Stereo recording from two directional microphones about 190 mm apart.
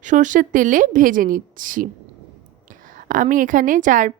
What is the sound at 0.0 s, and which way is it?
A woman's voice, 40° right (ahead or behind).